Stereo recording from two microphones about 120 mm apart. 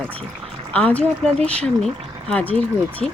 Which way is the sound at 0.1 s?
50° right (ahead or behind).